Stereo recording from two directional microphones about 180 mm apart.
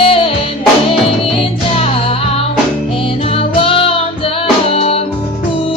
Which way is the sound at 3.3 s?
30° left (ahead or behind).